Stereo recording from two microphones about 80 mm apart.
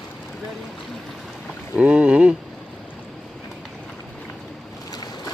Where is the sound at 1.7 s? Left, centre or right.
Centre.